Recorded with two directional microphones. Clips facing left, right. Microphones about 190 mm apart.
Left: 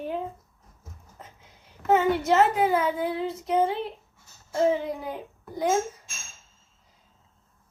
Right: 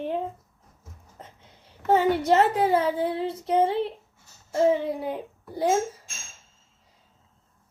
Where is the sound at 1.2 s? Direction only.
30° right (ahead or behind).